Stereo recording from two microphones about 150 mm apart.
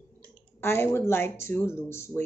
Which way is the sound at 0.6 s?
15° left (ahead or behind).